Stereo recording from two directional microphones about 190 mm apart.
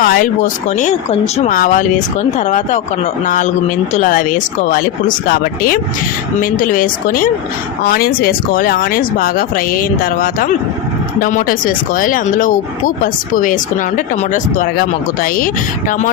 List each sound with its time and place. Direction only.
0.0 s speech: 45° left (ahead or behind)